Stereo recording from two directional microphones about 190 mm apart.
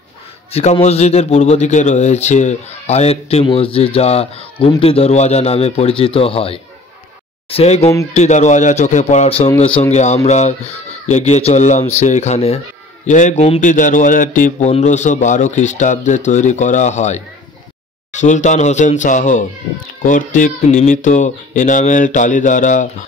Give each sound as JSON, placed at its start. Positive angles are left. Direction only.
{"t": 0.5, "sound": "a man's voice", "side_deg": 35}
{"t": 18.2, "sound": "a man's voice", "side_deg": 40}